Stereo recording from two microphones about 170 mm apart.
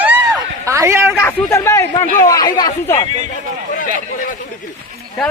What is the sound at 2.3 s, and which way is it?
Speech, 20° left (ahead or behind).